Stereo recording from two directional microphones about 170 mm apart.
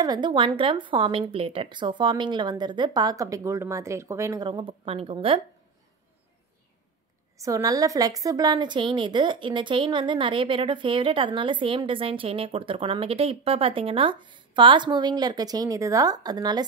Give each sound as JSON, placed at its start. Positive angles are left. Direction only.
{"t": 0.0, "sound": "a woman's voice", "side_deg": -25}
{"t": 7.3, "sound": "a woman's voice", "side_deg": -20}